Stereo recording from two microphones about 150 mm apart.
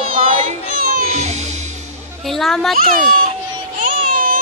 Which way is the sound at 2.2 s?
Centre (ahead or behind).